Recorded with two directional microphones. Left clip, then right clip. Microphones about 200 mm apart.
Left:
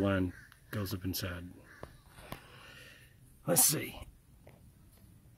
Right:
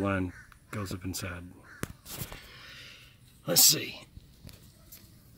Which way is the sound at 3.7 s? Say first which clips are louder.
Right 6 dB; 10° left (ahead or behind).